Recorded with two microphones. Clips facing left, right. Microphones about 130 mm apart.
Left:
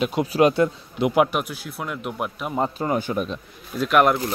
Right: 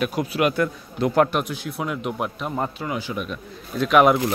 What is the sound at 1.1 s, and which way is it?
Speech, 10° left (ahead or behind).